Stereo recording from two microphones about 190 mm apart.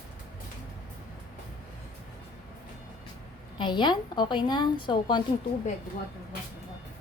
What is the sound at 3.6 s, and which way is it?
A woman's voice, 25° left (ahead or behind).